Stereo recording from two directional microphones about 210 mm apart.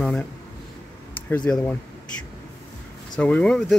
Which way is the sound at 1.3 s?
5° left (ahead or behind).